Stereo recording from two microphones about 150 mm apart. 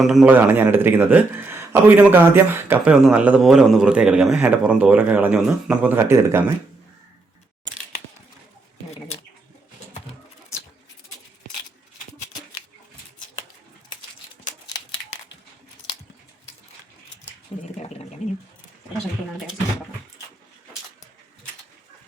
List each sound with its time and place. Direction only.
0.0 s a man's voice: centre (ahead or behind)
6.0 s a man's voice: 15° right (ahead or behind)